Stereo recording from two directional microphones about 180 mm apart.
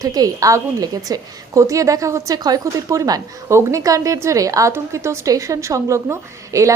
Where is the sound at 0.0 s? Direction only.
20° right (ahead or behind).